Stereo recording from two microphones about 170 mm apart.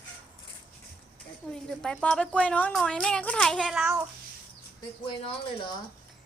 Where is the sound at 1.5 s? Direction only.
5° left (ahead or behind).